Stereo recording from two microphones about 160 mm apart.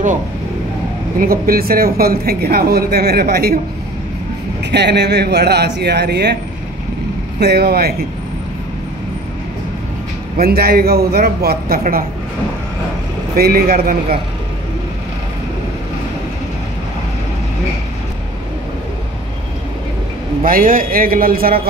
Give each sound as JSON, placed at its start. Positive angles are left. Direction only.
{"t": 1.2, "sound": "a woman's voice", "side_deg": -65}
{"t": 4.6, "sound": "speech", "side_deg": -90}
{"t": 7.3, "sound": "a man's voice", "side_deg": -90}
{"t": 10.3, "sound": "a woman's voice", "side_deg": -70}
{"t": 13.4, "sound": "a woman's voice", "side_deg": -70}
{"t": 20.4, "sound": "a man's voice", "side_deg": -60}